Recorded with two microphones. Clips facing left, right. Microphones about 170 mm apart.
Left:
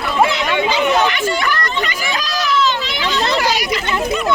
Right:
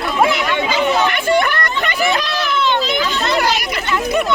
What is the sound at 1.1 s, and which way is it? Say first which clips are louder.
Speech: right 3 dB; 55° right (ahead or behind).